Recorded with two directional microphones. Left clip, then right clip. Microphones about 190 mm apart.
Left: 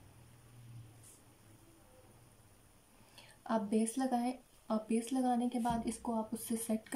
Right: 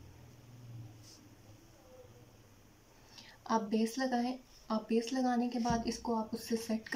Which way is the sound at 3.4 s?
15° left (ahead or behind).